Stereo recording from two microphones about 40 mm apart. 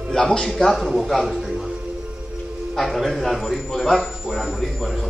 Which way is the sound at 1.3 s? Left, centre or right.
Centre.